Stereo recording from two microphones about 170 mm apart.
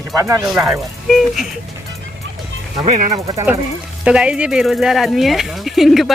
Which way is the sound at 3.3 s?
20° right (ahead or behind).